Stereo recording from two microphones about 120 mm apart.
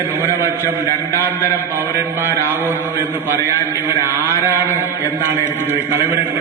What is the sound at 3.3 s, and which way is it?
A man's voice, 25° left (ahead or behind).